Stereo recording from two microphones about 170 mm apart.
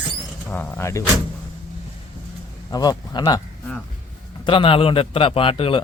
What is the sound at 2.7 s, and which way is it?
Speech, 25° left (ahead or behind).